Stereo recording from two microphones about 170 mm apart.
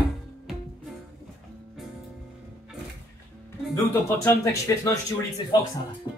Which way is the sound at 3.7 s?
15° left (ahead or behind).